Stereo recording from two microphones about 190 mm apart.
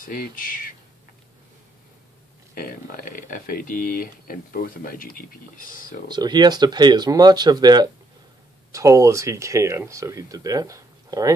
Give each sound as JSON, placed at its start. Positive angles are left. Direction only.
{"t": 0.0, "sound": "speech", "side_deg": 50}
{"t": 2.5, "sound": "speech", "side_deg": 50}
{"t": 6.0, "sound": "speech", "side_deg": -20}